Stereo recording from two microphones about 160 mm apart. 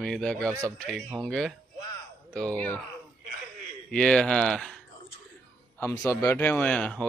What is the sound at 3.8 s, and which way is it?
Speech, 5° left (ahead or behind).